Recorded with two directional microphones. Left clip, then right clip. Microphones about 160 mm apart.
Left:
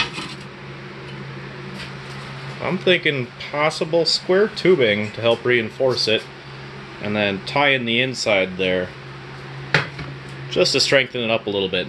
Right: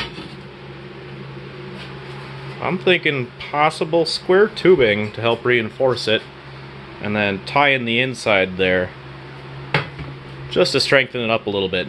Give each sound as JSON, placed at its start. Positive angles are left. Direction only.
{"t": 2.6, "sound": "speech", "side_deg": 0}
{"t": 8.3, "sound": "speech", "side_deg": -15}
{"t": 10.5, "sound": "speech", "side_deg": -15}